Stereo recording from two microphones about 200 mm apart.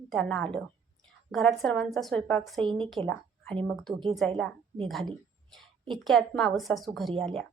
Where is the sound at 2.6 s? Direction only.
25° right (ahead or behind).